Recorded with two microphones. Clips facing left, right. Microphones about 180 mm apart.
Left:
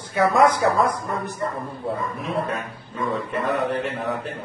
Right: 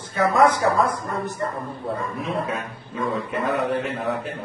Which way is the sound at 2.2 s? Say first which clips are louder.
Even; centre (ahead or behind).